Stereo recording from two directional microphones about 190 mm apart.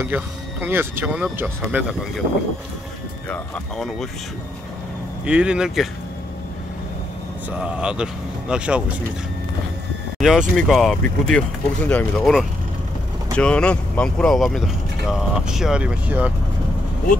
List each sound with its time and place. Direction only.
0.0 s speech: 10° right (ahead or behind)
3.3 s speech: 5° left (ahead or behind)
5.2 s speech: 5° right (ahead or behind)
7.6 s speech: 5° right (ahead or behind)
10.1 s speech: centre (ahead or behind)